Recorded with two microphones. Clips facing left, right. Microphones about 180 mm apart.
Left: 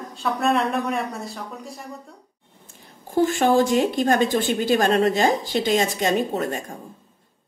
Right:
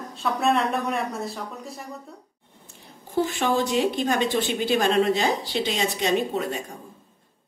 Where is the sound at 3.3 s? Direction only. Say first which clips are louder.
Left 6 dB; 45° left (ahead or behind).